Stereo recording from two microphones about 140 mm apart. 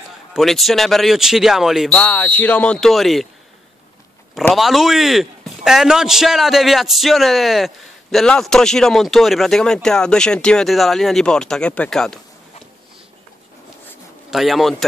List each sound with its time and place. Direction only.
0.3 s a man's voice: centre (ahead or behind)
2.0 s speech: 10° left (ahead or behind)
4.6 s a man's voice: centre (ahead or behind)
14.3 s a man's voice: centre (ahead or behind)